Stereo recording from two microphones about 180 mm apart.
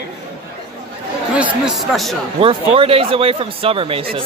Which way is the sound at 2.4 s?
30° right (ahead or behind).